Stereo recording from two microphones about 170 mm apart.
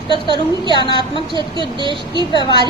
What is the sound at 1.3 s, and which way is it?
Speech, 30° right (ahead or behind).